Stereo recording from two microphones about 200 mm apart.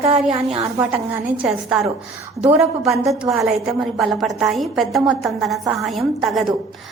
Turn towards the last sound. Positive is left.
turn(degrees=0)  # may be behind; listen again after turning